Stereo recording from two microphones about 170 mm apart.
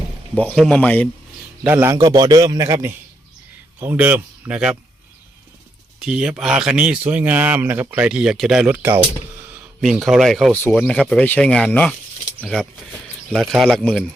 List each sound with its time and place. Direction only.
0.3 s speech: 5° left (ahead or behind)
1.6 s a man's voice: 15° right (ahead or behind)
6.0 s speech: 5° right (ahead or behind)